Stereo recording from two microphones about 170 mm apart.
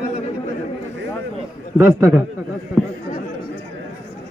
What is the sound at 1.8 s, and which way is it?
Speech, 15° right (ahead or behind).